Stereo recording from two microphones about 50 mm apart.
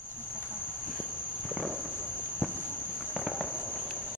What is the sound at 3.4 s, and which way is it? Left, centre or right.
Insect, centre.